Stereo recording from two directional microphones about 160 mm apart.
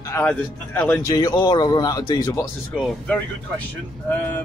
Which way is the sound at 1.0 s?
25° left (ahead or behind).